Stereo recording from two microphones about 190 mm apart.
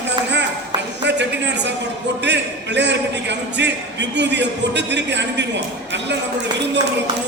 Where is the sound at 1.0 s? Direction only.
65° right (ahead or behind).